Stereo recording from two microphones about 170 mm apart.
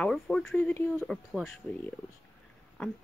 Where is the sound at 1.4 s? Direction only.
Centre (ahead or behind).